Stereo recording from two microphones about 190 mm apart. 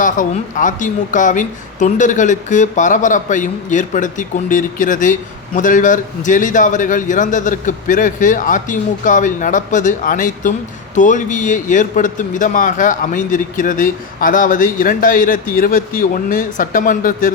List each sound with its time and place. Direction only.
0.0 s a man's voice: 45° left (ahead or behind)